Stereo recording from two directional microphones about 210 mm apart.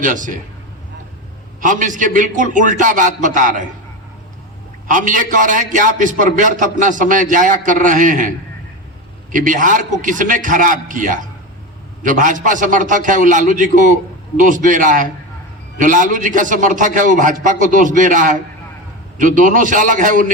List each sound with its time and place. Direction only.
0.0 s a man's voice: 40° right (ahead or behind)
1.6 s a man's voice: 40° right (ahead or behind)
4.9 s a man's voice: 40° right (ahead or behind)
9.3 s a man's voice: 40° right (ahead or behind)